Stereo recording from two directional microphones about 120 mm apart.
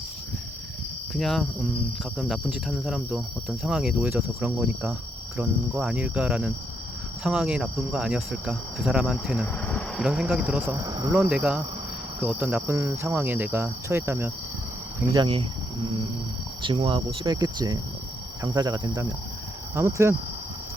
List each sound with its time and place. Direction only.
1.1 s speech: 5° left (ahead or behind); by 4.9 s 15° right (ahead or behind)
5.7 s cricket: 5° right (ahead or behind)
7.3 s speech: 5° right (ahead or behind)
9.6 s cricket: 10° left (ahead or behind)
10.0 s speech: 5° right (ahead or behind)
10.4 s cricket: 10° right (ahead or behind)
10.8 s insect: 25° right (ahead or behind)
11.1 s cricket: 15° right (ahead or behind)
12.6 s insect: 20° right (ahead or behind)
15.1 s cricket: 40° right (ahead or behind)
16.6 s cricket: 40° right (ahead or behind)
19.7 s insect: 20° right (ahead or behind)